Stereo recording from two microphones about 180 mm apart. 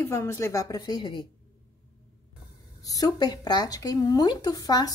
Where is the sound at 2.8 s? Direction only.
20° left (ahead or behind).